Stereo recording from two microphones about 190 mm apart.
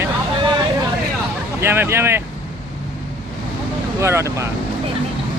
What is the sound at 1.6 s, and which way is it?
Speech, 10° right (ahead or behind).